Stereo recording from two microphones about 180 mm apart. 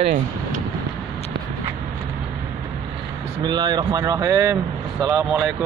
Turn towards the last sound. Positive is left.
turn(degrees=-10)  # may be behind; listen again after turning